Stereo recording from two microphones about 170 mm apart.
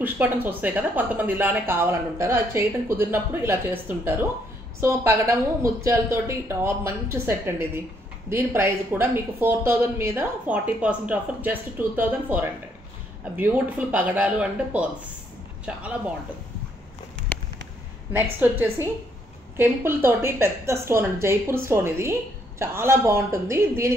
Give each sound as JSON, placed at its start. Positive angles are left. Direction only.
{"t": 0.0, "sound": "speech", "side_deg": -10}
{"t": 18.1, "sound": "speech", "side_deg": -10}